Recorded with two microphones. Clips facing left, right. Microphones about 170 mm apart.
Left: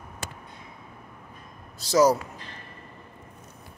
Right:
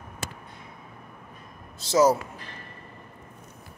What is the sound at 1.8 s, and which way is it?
Speech, 25° right (ahead or behind).